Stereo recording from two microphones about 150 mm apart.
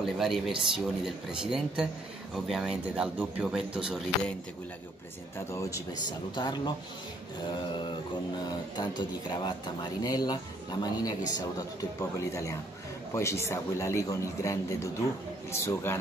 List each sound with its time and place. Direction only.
0.2 s speech: centre (ahead or behind)
5.5 s speech: 20° left (ahead or behind)
7.5 s a sound: 30° left (ahead or behind)
8.7 s a man's voice: 30° left (ahead or behind)